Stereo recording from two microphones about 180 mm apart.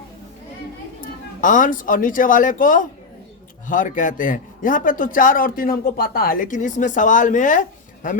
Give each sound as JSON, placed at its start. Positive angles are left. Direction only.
{"t": 1.0, "sound": "a man's voice", "side_deg": 45}